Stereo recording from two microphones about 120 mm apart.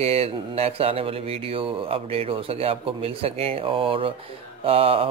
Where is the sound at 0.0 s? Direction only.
55° right (ahead or behind).